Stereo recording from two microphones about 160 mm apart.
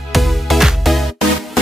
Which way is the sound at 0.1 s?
Centre (ahead or behind).